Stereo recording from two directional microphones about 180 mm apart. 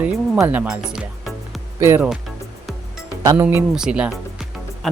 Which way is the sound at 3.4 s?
10° right (ahead or behind).